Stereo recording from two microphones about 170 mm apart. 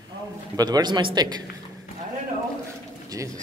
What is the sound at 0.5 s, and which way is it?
Speech, 25° right (ahead or behind).